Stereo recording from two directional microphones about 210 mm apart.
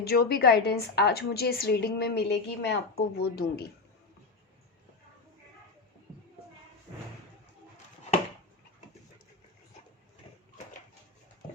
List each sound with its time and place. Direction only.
0.0 s a woman's voice: 50° left (ahead or behind)